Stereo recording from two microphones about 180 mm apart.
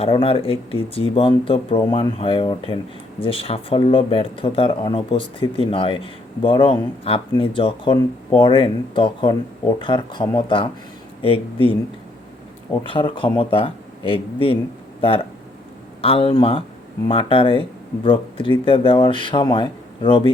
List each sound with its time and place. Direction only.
0.0 s speech: 35° left (ahead or behind)
12.8 s speech: 30° left (ahead or behind)
16.0 s speech: 30° left (ahead or behind)